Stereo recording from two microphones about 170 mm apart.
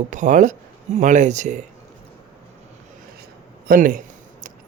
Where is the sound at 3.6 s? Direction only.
55° right (ahead or behind).